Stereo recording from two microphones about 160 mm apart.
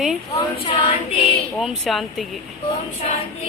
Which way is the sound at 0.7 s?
35° left (ahead or behind).